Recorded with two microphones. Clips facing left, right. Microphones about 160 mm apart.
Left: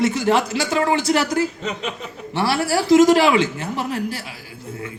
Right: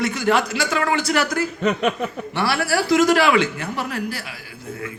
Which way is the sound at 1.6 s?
60° right (ahead or behind).